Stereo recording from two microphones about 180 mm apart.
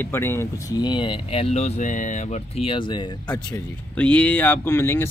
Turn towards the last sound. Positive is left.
turn(degrees=15)  # may be behind; listen again after turning